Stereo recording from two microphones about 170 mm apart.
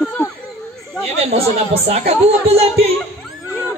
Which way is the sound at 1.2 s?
35° right (ahead or behind).